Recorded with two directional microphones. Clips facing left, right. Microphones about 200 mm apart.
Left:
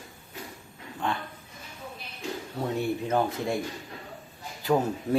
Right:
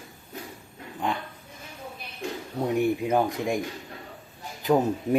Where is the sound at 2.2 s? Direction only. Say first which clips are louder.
Right 2 dB; 55° right (ahead or behind).